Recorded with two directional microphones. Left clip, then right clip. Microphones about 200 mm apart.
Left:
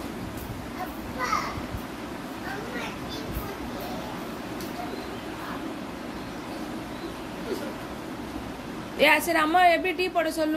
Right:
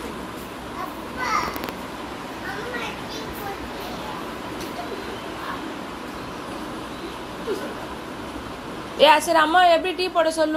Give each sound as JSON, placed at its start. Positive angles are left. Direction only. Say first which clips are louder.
{"t": 9.0, "sound": "a woman's voice", "louder": "right 6 dB", "side_deg": 35}